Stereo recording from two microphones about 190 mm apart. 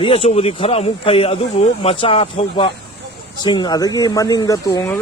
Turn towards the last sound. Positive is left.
turn(degrees=20)  # may be behind; listen again after turning